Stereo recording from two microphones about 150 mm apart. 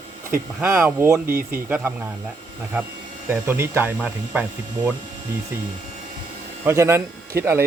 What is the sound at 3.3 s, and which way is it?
Speech, 15° right (ahead or behind).